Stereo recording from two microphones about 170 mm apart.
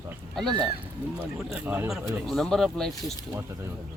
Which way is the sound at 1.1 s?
10° right (ahead or behind).